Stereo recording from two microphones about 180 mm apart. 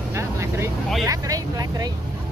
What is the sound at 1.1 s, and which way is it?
Speech, 20° right (ahead or behind).